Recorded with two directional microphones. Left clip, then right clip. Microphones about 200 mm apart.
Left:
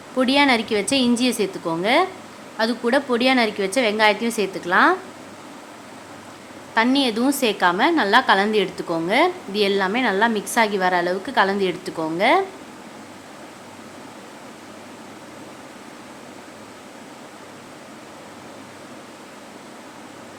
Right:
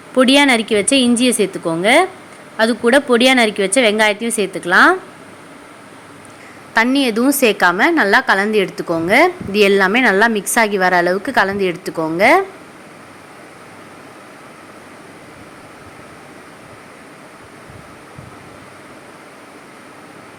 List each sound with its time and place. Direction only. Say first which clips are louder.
0.2 s a woman's voice: right 6 dB; 25° right (ahead or behind)
6.7 s a woman's voice: right 4 dB; 25° right (ahead or behind)